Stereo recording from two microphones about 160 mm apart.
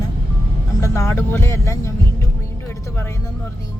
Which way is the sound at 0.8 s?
15° left (ahead or behind).